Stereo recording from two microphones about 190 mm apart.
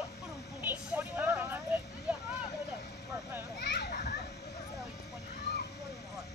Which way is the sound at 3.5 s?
60° left (ahead or behind).